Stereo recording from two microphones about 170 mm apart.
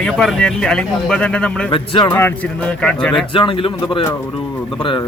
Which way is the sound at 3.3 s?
30° left (ahead or behind).